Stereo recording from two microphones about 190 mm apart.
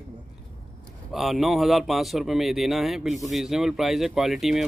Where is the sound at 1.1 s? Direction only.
Centre (ahead or behind).